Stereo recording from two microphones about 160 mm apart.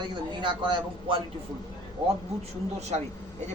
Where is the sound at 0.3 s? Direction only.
30° right (ahead or behind).